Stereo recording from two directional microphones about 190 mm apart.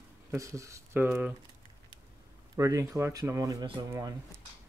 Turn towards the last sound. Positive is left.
turn(degrees=-20)  # may be behind; listen again after turning